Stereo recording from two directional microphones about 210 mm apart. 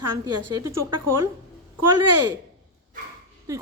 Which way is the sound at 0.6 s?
15° right (ahead or behind).